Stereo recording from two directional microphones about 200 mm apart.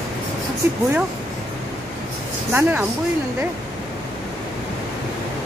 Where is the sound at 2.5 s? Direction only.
10° right (ahead or behind).